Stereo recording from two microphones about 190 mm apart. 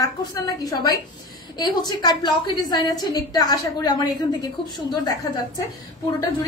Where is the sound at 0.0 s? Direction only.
20° left (ahead or behind).